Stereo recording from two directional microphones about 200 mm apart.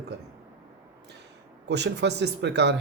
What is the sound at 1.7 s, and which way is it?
Speech, 60° right (ahead or behind).